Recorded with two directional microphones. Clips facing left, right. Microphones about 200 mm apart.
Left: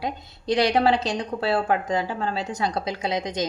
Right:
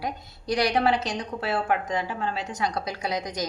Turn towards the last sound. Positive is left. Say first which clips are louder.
# left 3 dB
turn(degrees=25)  # may be behind; listen again after turning